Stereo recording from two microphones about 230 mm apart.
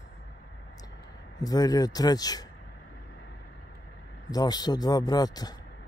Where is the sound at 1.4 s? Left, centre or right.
Centre.